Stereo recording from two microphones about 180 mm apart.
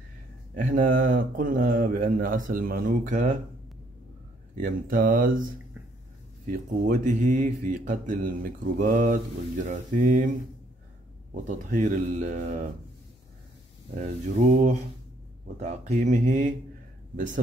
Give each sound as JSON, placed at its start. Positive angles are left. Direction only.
{"t": 0.6, "sound": "speech", "side_deg": -45}
{"t": 4.6, "sound": "speech", "side_deg": -50}
{"t": 11.4, "sound": "speech", "side_deg": -45}
{"t": 13.9, "sound": "mantra", "side_deg": -40}
{"t": 15.6, "sound": "speech", "side_deg": -40}